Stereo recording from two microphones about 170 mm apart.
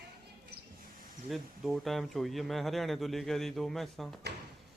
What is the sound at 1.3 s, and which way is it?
Speech, centre (ahead or behind).